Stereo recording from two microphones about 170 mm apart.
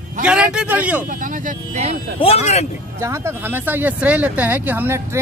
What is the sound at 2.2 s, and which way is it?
Speech, 35° left (ahead or behind).